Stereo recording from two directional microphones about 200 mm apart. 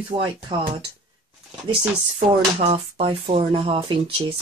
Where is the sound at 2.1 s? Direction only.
30° right (ahead or behind).